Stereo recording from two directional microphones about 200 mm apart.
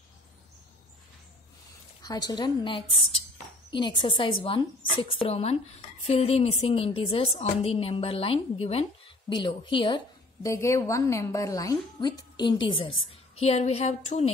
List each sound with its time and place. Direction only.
2.0 s a woman's voice: 20° left (ahead or behind)